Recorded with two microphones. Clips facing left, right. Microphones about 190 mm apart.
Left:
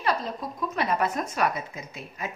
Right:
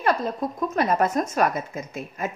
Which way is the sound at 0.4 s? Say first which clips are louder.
Right 7 dB; 50° right (ahead or behind).